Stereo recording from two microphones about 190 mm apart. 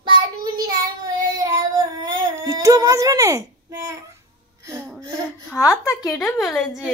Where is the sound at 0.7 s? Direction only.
20° right (ahead or behind).